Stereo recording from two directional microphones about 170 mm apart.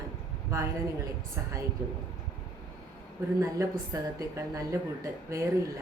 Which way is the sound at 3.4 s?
20° right (ahead or behind).